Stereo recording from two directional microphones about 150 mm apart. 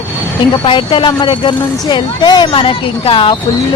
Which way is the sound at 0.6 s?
35° left (ahead or behind).